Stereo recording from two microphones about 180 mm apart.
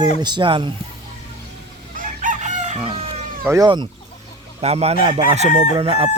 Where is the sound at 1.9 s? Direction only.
45° right (ahead or behind).